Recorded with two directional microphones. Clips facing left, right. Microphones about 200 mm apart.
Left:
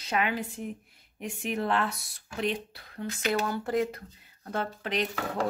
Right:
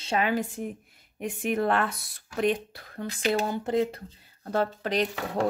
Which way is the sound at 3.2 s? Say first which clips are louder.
Right 3 dB; 30° right (ahead or behind).